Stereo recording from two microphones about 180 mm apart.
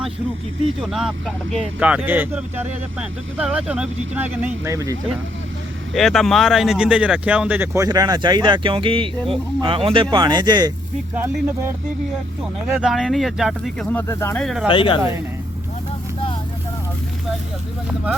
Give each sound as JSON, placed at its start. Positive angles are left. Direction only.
{"t": 0.8, "sound": "speech", "side_deg": 0}
{"t": 5.9, "sound": "speech", "side_deg": 0}
{"t": 11.1, "sound": "speech", "side_deg": -15}
{"t": 12.6, "sound": "speech", "side_deg": 0}
{"t": 14.1, "sound": "speech", "side_deg": 15}
{"t": 14.4, "sound": "speech", "side_deg": 0}
{"t": 14.7, "sound": "speech", "side_deg": 25}